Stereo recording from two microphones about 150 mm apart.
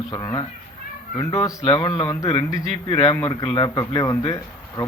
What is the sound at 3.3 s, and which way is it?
Speech, 35° left (ahead or behind).